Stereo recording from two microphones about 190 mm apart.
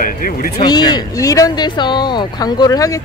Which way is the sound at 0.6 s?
20° left (ahead or behind).